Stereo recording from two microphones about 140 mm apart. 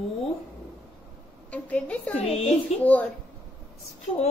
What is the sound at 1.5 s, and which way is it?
Speech, 10° left (ahead or behind).